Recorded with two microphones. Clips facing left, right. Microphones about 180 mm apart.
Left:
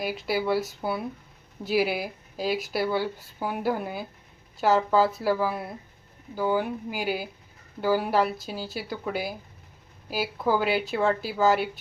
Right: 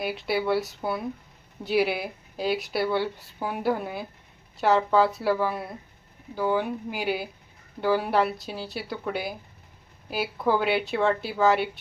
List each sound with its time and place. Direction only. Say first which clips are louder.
0.0 s speech: even; centre (ahead or behind)